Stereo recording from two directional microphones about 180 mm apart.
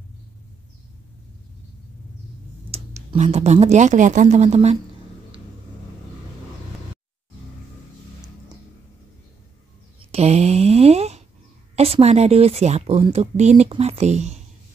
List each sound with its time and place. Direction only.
2.7 s speech: 35° right (ahead or behind)
10.1 s a sound: 35° right (ahead or behind)
11.7 s speech: 35° right (ahead or behind)